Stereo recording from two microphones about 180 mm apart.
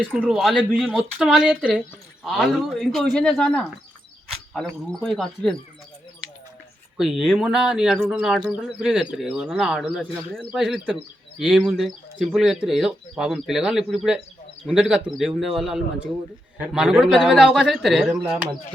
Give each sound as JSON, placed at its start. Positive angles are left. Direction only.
{"t": 0.0, "sound": "speech", "side_deg": -5}
{"t": 6.9, "sound": "speech", "side_deg": 0}